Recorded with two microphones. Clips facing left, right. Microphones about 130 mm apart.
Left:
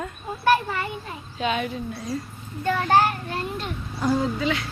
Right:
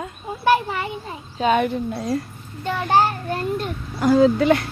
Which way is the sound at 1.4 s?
50° right (ahead or behind).